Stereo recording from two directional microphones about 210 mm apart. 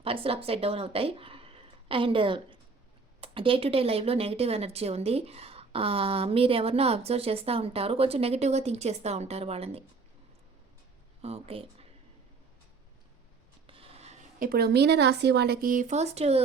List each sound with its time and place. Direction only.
0.0 s a woman's voice: 25° right (ahead or behind)
11.2 s speech: 30° right (ahead or behind)
13.7 s speech: 25° right (ahead or behind)